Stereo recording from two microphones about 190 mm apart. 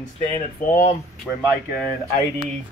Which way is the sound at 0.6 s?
50° left (ahead or behind).